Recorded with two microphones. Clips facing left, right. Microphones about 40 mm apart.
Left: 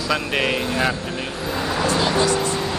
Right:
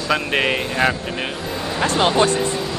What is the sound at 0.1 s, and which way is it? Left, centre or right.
Speech, centre.